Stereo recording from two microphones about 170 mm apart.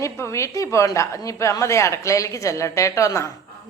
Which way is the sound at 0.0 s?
15° left (ahead or behind).